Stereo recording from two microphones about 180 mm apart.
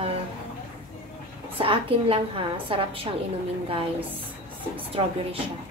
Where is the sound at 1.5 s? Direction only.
30° right (ahead or behind).